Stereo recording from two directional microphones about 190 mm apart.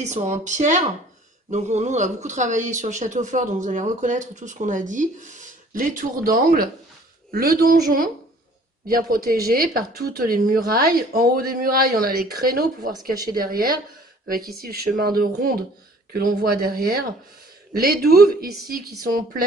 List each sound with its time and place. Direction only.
0.0 s speech: 40° right (ahead or behind)
14.2 s speech: 50° right (ahead or behind)